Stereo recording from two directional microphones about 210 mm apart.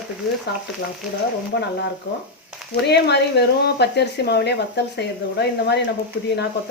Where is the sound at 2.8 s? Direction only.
55° left (ahead or behind).